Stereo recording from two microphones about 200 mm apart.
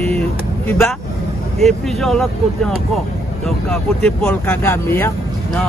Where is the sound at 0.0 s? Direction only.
5° left (ahead or behind).